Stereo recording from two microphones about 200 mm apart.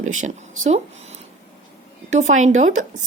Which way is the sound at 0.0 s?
35° right (ahead or behind).